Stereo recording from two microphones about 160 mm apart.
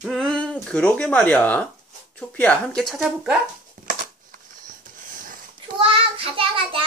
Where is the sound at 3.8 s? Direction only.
50° right (ahead or behind).